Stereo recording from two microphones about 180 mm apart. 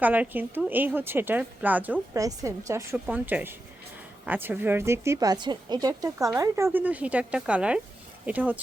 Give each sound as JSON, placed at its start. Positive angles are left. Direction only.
{"t": 0.0, "sound": "speech", "side_deg": -10}